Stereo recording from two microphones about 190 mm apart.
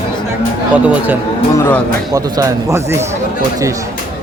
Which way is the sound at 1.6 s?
15° left (ahead or behind).